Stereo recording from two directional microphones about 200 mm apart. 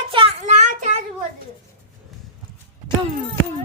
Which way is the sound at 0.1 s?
30° right (ahead or behind).